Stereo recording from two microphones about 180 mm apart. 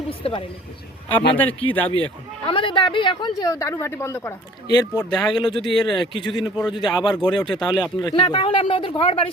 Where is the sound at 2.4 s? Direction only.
30° left (ahead or behind).